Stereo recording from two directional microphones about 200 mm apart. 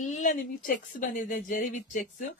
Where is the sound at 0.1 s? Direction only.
40° left (ahead or behind).